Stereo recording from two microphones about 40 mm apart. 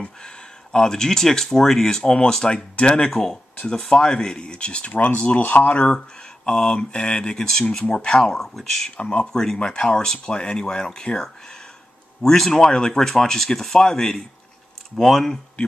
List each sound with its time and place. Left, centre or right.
0.0 s speech: centre
3.1 s speech: centre
3.5 s speech: left
4.9 s speech: left
5.9 s speech: centre
8.9 s speech: left; by 15.3 s centre